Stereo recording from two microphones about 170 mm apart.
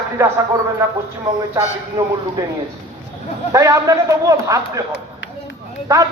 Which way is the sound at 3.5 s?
20° right (ahead or behind).